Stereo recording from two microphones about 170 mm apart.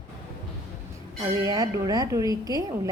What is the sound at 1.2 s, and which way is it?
A woman's voice, 25° right (ahead or behind).